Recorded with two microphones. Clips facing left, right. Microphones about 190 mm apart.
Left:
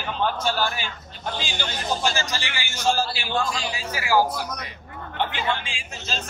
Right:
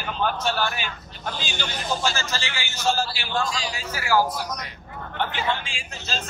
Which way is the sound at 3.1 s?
60° left (ahead or behind).